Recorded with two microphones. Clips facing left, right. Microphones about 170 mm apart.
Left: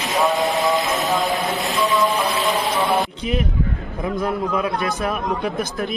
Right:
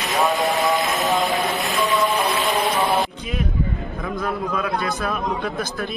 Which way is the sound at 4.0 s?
20° left (ahead or behind).